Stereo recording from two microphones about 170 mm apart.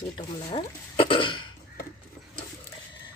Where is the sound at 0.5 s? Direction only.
30° left (ahead or behind).